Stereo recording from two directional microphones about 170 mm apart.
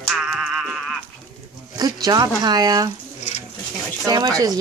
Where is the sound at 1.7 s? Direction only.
25° right (ahead or behind).